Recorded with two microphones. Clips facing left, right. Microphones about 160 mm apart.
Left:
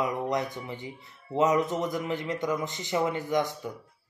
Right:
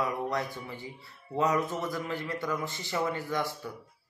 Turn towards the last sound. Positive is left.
turn(degrees=20)  # may be behind; listen again after turning